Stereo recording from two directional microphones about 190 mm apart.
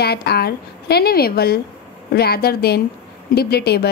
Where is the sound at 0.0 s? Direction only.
55° left (ahead or behind).